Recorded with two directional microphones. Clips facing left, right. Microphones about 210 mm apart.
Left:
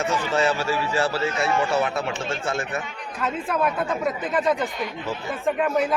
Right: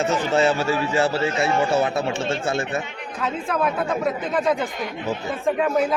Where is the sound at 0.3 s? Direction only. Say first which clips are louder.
Right 3 dB; 25° right (ahead or behind).